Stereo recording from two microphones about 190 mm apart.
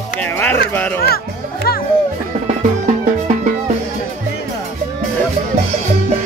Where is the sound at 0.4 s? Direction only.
10° left (ahead or behind).